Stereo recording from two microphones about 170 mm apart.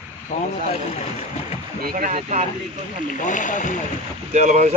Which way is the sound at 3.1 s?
50° left (ahead or behind).